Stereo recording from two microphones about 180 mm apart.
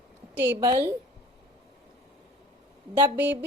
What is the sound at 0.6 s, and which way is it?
Speech, 20° right (ahead or behind).